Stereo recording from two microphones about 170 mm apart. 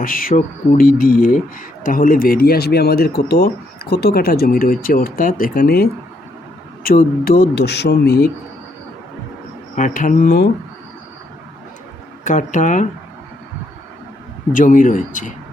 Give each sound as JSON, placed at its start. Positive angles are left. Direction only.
{"t": 0.0, "sound": "speech", "side_deg": 55}
{"t": 9.7, "sound": "speech", "side_deg": 50}
{"t": 12.2, "sound": "speech", "side_deg": 50}
{"t": 14.5, "sound": "speech", "side_deg": 50}